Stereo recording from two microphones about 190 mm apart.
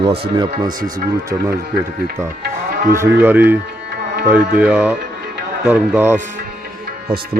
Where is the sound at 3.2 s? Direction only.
10° right (ahead or behind).